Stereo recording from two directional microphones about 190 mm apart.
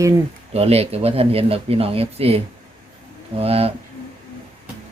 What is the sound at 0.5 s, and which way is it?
Speech, 30° right (ahead or behind).